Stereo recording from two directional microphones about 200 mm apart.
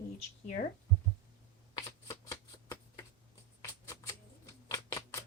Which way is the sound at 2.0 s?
15° left (ahead or behind).